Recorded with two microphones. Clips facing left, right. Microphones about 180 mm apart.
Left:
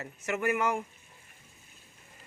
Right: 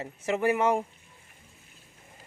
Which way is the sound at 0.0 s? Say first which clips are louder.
Right 4 dB; 30° right (ahead or behind).